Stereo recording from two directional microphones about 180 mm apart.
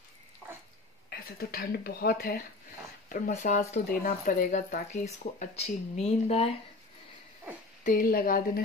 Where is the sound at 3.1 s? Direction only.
45° left (ahead or behind).